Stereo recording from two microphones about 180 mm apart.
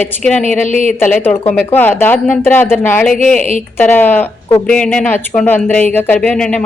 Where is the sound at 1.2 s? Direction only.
10° left (ahead or behind).